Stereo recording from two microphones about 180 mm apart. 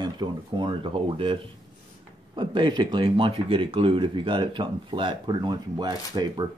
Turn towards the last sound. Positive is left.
turn(degrees=-20)  # may be behind; listen again after turning